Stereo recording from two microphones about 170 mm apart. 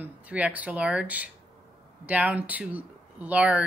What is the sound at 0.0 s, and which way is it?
A woman's voice, 10° right (ahead or behind).